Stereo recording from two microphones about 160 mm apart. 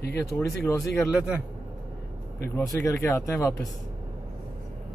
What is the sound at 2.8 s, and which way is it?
Speech, 15° left (ahead or behind).